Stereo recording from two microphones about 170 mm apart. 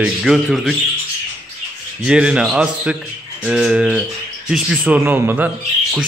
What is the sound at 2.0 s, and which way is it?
Speech, 5° right (ahead or behind).